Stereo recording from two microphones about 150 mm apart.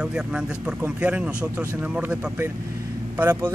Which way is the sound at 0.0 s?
5° right (ahead or behind).